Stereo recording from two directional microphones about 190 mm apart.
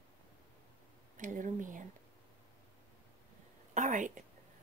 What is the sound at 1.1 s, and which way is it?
Speech, 45° right (ahead or behind).